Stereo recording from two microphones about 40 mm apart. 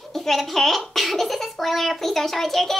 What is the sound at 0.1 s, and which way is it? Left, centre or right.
A child's voice, centre.